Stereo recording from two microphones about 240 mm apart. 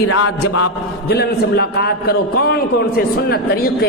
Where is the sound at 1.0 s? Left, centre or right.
Left.